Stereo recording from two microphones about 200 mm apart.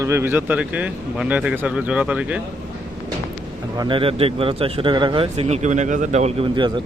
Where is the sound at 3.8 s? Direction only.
25° right (ahead or behind).